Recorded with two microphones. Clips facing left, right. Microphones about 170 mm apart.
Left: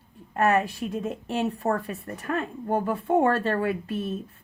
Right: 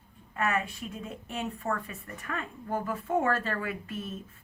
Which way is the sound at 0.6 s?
75° left (ahead or behind).